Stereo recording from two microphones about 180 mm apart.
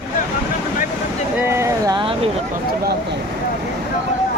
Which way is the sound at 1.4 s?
15° right (ahead or behind).